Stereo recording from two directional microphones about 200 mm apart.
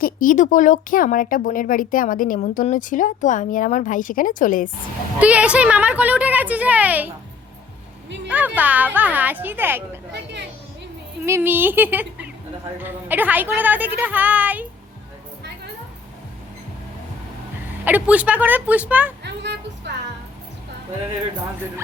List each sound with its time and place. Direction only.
0.0 s speech: 40° left (ahead or behind)
5.2 s a woman's voice: 5° right (ahead or behind)
8.3 s a woman's voice: 10° right (ahead or behind)
11.3 s a woman's voice: 10° right (ahead or behind)
17.8 s a woman's voice: 10° right (ahead or behind)
19.2 s music: 60° right (ahead or behind)